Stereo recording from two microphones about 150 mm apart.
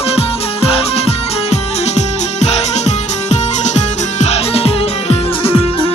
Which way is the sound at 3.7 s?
50° left (ahead or behind).